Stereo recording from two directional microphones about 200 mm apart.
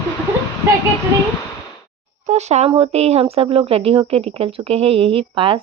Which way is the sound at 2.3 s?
35° right (ahead or behind).